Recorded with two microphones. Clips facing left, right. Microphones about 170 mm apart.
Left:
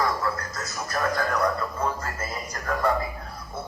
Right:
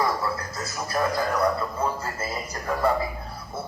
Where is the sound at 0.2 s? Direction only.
10° right (ahead or behind).